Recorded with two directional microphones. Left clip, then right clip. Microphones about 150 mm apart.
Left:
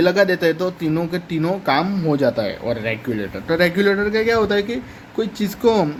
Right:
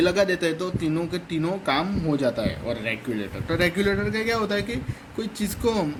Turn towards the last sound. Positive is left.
turn(degrees=60)  # may be behind; listen again after turning